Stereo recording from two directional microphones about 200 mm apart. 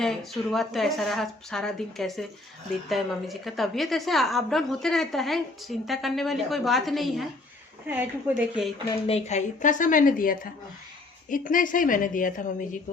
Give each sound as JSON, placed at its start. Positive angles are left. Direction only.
{"t": 0.0, "sound": "a woman's voice", "side_deg": 0}
{"t": 9.0, "sound": "a woman's voice", "side_deg": 30}